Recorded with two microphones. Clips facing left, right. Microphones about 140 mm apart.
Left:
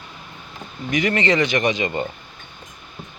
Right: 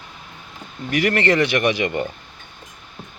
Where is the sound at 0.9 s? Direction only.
65° right (ahead or behind).